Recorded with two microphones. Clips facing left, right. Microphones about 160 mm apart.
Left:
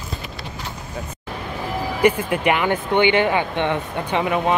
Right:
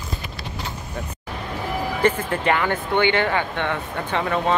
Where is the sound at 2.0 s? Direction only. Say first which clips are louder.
Left 4 dB; 15° left (ahead or behind).